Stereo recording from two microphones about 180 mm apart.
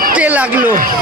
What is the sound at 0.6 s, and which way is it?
Speech, 50° right (ahead or behind).